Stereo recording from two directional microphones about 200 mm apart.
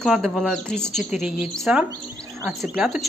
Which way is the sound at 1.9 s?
15° right (ahead or behind).